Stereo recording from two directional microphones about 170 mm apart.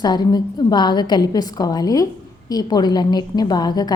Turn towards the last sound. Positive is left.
turn(degrees=25)  # may be behind; listen again after turning